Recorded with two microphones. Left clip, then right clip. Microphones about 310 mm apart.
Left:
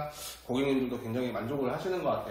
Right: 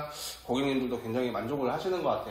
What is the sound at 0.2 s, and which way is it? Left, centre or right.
Speech, centre.